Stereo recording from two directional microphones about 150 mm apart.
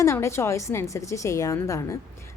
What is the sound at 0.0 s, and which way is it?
A woman's voice, 20° left (ahead or behind).